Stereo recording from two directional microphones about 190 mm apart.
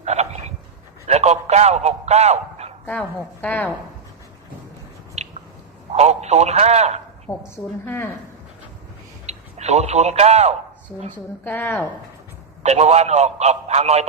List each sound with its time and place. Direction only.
0.0 s dog: 35° right (ahead or behind)
1.0 s a man's voice: 35° right (ahead or behind)
2.8 s a woman's voice: 5° left (ahead or behind)
5.2 s a sound: 35° right (ahead or behind)
5.9 s a man's voice: 35° right (ahead or behind)
7.3 s a woman's voice: 10° left (ahead or behind)
9.2 s speech: 35° right (ahead or behind)
11.4 s a woman's voice: 10° left (ahead or behind)
12.6 s a man's voice: 35° right (ahead or behind)